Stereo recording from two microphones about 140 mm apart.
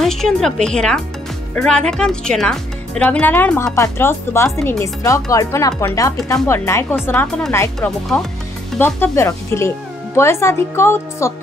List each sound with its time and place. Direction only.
0.0 s a woman's voice: 5° left (ahead or behind); by 11.3 s 20° left (ahead or behind)